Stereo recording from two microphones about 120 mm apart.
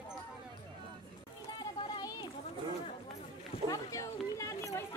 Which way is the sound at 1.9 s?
35° left (ahead or behind).